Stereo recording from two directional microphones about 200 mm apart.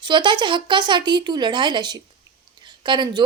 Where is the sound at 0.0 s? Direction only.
25° right (ahead or behind).